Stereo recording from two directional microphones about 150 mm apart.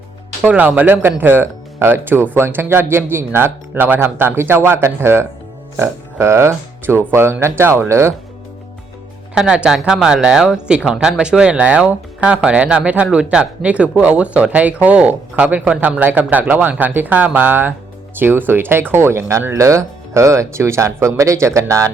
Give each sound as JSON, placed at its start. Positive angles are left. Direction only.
{"t": 0.4, "sound": "speech", "side_deg": -10}
{"t": 9.3, "sound": "speech", "side_deg": -5}